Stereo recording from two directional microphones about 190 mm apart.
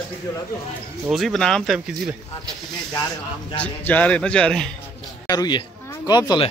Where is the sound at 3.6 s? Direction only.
10° left (ahead or behind).